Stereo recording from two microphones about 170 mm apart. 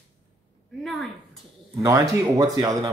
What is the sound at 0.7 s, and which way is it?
Speech, centre (ahead or behind).